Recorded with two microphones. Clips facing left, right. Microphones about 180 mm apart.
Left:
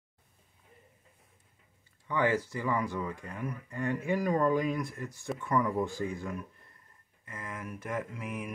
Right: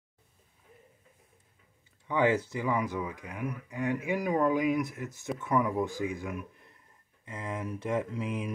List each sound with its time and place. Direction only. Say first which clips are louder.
2.0 s speech: right 2 dB; 20° right (ahead or behind)